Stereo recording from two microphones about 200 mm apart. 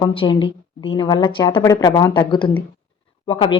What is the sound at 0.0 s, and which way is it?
Speech, 25° left (ahead or behind).